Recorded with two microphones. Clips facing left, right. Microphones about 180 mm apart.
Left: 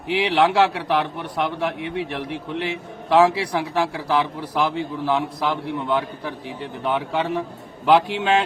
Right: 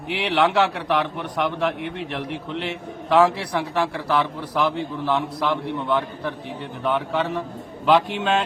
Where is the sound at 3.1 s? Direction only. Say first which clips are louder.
Left 1 dB; 10° left (ahead or behind).